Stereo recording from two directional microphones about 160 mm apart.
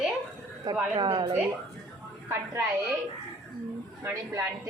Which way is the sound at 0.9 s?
30° right (ahead or behind).